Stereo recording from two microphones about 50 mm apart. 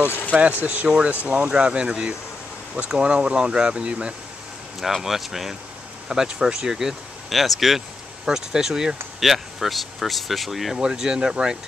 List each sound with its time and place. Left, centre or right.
0.3 s speech: right
0.8 s speech: centre
4.7 s speech: centre
10.8 s speech: centre